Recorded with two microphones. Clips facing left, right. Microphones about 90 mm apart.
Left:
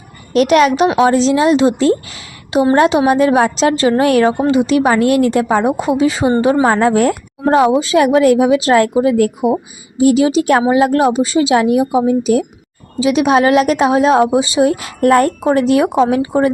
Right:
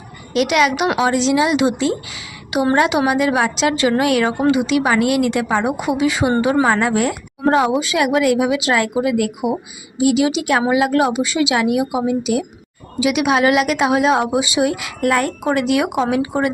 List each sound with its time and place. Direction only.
0.3 s a woman's voice: 40° left (ahead or behind)
2.0 s a sound: 35° left (ahead or behind)
2.7 s a woman's voice: 35° left (ahead or behind)
7.5 s a woman's voice: 30° left (ahead or behind)